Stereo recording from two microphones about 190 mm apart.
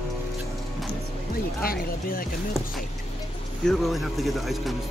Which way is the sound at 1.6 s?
50° left (ahead or behind).